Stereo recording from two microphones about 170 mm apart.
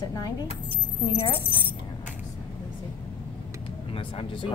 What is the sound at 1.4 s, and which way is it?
Speech, 10° left (ahead or behind).